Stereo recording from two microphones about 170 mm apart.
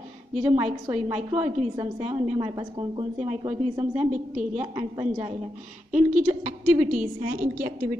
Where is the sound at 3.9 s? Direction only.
45° right (ahead or behind).